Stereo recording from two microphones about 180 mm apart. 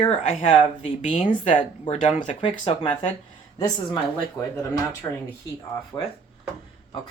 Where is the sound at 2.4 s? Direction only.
30° left (ahead or behind).